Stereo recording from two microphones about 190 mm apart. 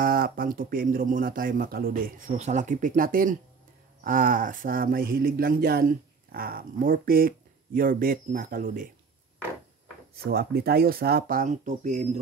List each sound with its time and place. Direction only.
0.0 s speech: 50° right (ahead or behind)
10.2 s speech: 55° right (ahead or behind); by 12.2 s 35° right (ahead or behind)